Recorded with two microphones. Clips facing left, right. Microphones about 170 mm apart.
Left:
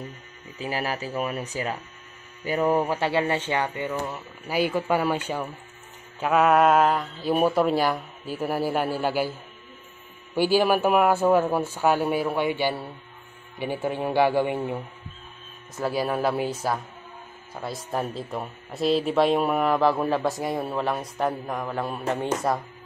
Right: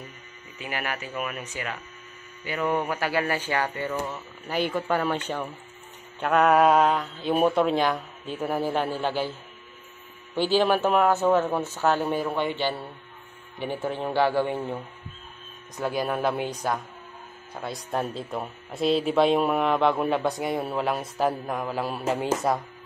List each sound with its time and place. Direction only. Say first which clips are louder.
0.6 s speech: left 4 dB; 30° left (ahead or behind)
4.1 s speech: left 1 dB; 10° left (ahead or behind)
10.3 s speech: left 1 dB; 10° left (ahead or behind)